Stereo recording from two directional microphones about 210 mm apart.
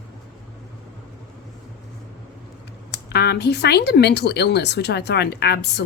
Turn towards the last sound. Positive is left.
turn(degrees=50)  # may be behind; listen again after turning